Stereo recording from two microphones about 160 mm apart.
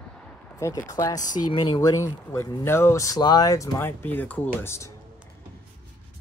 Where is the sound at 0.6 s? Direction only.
20° left (ahead or behind).